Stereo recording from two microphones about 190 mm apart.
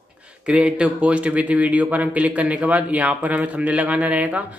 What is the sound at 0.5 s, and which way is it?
A man's voice, 5° right (ahead or behind).